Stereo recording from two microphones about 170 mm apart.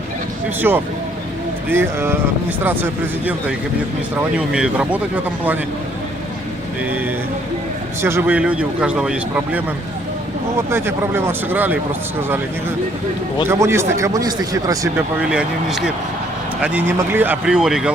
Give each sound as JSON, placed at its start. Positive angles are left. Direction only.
{"t": 0.7, "sound": "a man's voice", "side_deg": -10}
{"t": 4.4, "sound": "a man's voice", "side_deg": -5}
{"t": 8.0, "sound": "a man's voice", "side_deg": -15}
{"t": 10.7, "sound": "a man's voice", "side_deg": -15}
{"t": 13.5, "sound": "a man's voice", "side_deg": -15}
{"t": 15.3, "sound": "speech", "side_deg": -5}